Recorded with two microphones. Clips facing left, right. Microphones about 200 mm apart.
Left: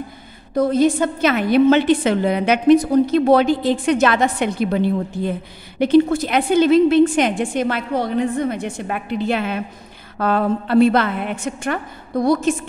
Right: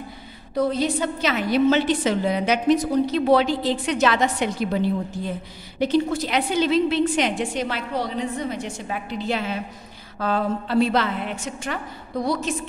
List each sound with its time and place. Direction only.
0.6 s a woman's voice: 50° left (ahead or behind)